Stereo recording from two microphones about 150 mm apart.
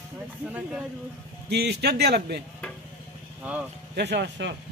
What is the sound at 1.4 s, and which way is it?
Speech, 90° right.